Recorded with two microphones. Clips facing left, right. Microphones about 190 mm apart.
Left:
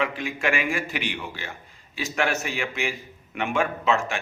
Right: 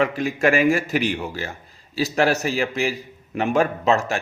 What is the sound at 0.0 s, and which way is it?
A man's voice, 40° right (ahead or behind).